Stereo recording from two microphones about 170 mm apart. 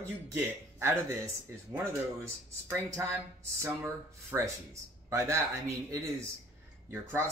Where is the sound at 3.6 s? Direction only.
15° right (ahead or behind).